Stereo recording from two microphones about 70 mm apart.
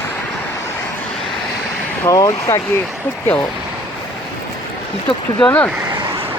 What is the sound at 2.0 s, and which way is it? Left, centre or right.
Speech, left.